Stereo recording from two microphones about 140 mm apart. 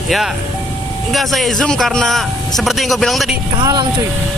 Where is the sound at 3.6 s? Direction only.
30° right (ahead or behind).